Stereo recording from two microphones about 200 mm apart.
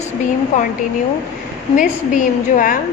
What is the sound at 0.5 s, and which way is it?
Speech, 40° left (ahead or behind).